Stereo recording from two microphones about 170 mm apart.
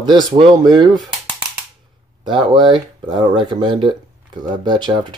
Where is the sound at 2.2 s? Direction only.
30° right (ahead or behind).